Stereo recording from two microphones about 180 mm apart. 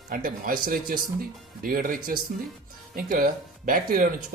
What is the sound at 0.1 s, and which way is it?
Speech, 50° right (ahead or behind).